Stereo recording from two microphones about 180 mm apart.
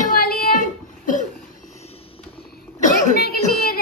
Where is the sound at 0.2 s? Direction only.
55° left (ahead or behind).